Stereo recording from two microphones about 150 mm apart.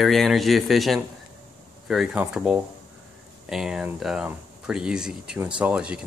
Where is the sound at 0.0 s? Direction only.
Centre (ahead or behind).